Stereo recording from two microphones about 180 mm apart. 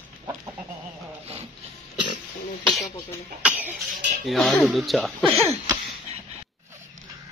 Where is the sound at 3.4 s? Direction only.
5° right (ahead or behind).